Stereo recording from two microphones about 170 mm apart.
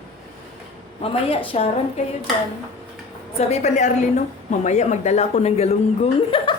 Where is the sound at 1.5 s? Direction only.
40° left (ahead or behind).